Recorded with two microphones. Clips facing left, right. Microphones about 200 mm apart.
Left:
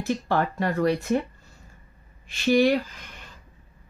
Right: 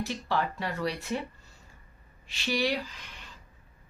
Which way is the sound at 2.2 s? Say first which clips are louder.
Left 10 dB; 50° left (ahead or behind).